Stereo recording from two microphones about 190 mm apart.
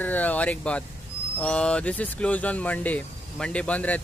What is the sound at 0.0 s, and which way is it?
Speech, 10° left (ahead or behind).